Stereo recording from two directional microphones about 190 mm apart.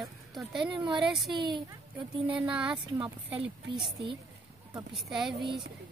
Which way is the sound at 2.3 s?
5° right (ahead or behind).